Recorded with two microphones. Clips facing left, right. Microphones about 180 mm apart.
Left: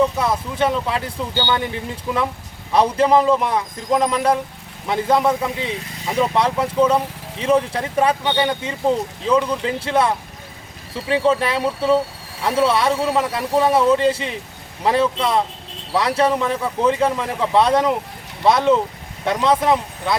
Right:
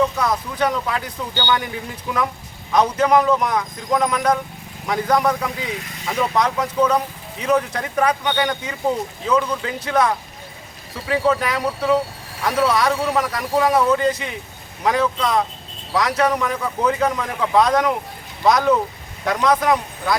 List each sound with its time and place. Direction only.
0.2 s speech: 25° left (ahead or behind)
11.1 s speech: 25° left (ahead or behind)